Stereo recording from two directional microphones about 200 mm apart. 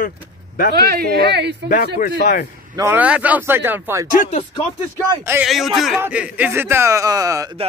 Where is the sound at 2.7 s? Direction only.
10° right (ahead or behind).